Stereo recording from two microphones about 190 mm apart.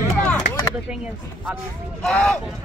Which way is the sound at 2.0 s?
5° left (ahead or behind).